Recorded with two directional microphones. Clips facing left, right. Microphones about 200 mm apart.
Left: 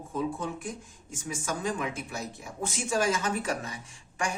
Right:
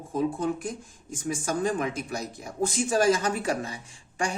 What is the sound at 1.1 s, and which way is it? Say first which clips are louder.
Speech: right 5 dB; 35° right (ahead or behind).